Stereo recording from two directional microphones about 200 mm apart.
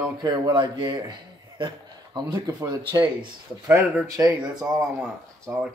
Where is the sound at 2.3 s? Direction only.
20° right (ahead or behind).